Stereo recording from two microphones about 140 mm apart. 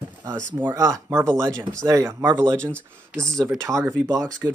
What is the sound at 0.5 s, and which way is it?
Speech, 20° right (ahead or behind).